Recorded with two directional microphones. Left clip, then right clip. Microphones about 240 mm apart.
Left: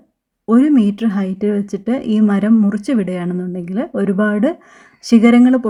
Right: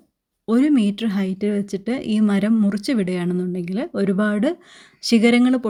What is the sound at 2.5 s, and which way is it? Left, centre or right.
Speech, right.